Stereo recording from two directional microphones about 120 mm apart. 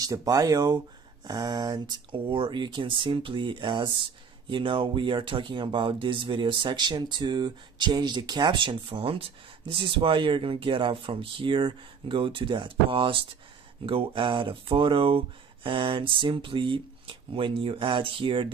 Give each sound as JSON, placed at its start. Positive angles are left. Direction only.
{"t": 0.0, "sound": "speech", "side_deg": -30}